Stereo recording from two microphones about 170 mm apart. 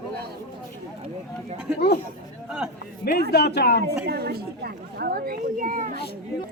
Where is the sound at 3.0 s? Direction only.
65° left (ahead or behind).